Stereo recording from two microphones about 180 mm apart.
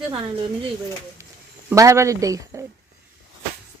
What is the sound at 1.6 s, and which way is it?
Speech, 15° right (ahead or behind).